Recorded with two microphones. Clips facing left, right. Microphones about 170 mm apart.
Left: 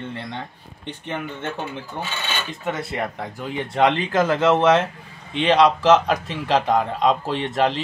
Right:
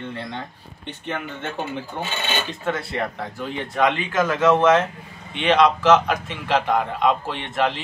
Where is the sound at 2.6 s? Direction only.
20° left (ahead or behind).